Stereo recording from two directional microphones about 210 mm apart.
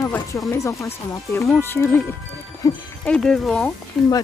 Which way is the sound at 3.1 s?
Centre (ahead or behind).